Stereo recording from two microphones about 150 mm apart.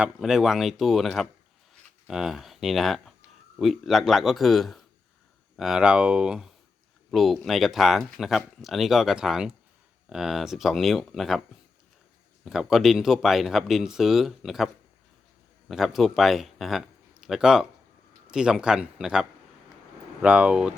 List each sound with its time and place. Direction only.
0.0 s speech: 5° right (ahead or behind)
12.5 s speech: centre (ahead or behind)
15.7 s speech: centre (ahead or behind)